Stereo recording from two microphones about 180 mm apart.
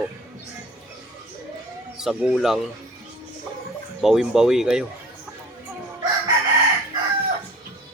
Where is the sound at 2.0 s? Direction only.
Centre (ahead or behind).